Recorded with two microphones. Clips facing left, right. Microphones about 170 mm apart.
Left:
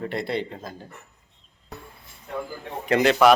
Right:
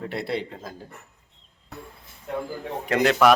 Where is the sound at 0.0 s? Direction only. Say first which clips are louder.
Left 1 dB; centre (ahead or behind).